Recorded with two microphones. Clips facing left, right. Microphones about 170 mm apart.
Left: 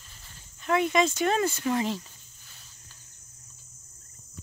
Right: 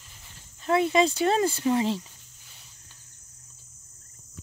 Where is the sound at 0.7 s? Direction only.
30° right (ahead or behind).